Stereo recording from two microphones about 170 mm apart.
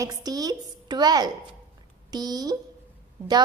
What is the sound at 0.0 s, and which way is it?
A woman's voice, 20° right (ahead or behind).